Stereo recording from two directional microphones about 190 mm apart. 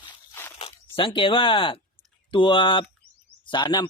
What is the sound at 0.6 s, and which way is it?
Speech, 25° left (ahead or behind).